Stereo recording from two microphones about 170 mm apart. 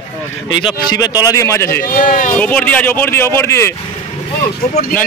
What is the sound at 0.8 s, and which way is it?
Speech, 20° left (ahead or behind).